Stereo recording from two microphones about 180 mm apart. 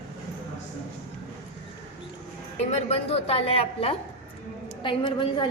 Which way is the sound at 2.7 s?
35° left (ahead or behind).